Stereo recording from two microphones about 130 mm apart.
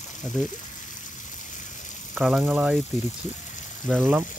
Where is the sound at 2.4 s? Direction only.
15° right (ahead or behind).